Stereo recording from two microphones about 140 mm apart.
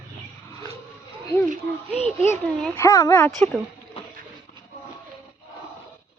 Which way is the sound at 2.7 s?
20° left (ahead or behind).